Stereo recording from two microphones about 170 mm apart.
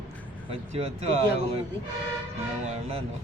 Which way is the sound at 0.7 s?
40° right (ahead or behind).